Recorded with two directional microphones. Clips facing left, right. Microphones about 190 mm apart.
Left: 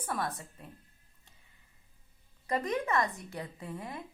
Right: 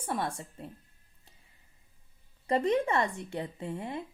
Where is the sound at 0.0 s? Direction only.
25° right (ahead or behind).